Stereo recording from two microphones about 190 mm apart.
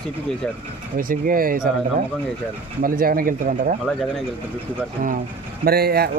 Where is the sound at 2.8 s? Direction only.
50° right (ahead or behind).